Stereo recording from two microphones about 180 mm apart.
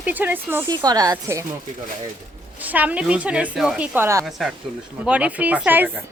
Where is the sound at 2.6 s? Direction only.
10° right (ahead or behind).